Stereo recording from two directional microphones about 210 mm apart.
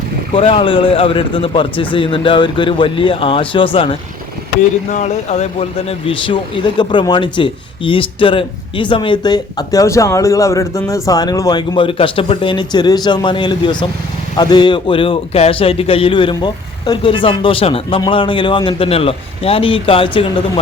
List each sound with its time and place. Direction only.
0.3 s speech: 25° left (ahead or behind)